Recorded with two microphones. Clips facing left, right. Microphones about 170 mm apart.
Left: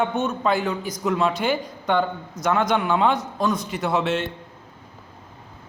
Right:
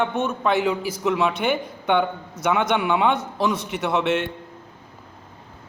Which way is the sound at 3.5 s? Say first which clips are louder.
Even; 70° right (ahead or behind).